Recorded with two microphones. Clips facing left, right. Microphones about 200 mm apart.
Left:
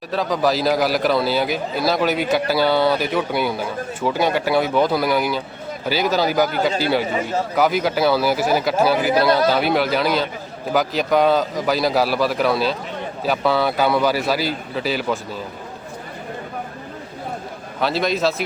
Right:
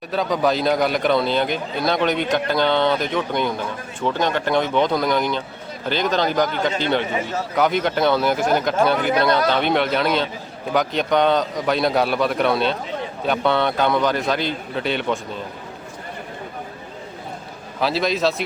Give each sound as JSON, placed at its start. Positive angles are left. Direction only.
{"t": 0.1, "sound": "speech", "side_deg": 0}
{"t": 17.7, "sound": "speech", "side_deg": 0}